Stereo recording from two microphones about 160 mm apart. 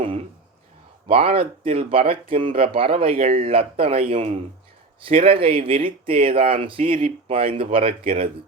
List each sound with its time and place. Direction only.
1.0 s speech: 35° right (ahead or behind)